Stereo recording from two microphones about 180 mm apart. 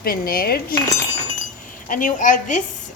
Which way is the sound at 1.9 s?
45° left (ahead or behind).